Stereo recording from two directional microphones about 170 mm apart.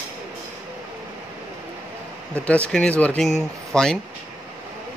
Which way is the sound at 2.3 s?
5° left (ahead or behind).